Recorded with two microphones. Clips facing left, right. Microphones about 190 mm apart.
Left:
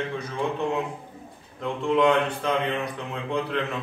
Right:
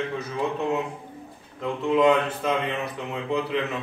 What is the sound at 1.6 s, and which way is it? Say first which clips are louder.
A man's voice: right 1 dB; 5° right (ahead or behind).